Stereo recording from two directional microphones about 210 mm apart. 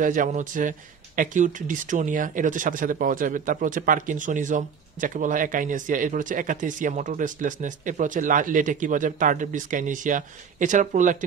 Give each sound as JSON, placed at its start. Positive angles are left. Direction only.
{"t": 0.0, "sound": "speech", "side_deg": -40}